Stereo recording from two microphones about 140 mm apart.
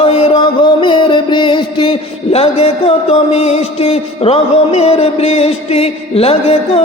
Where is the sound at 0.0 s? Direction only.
35° left (ahead or behind).